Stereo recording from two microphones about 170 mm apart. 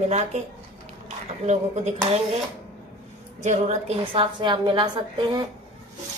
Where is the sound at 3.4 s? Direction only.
40° right (ahead or behind); by 5.5 s 25° right (ahead or behind).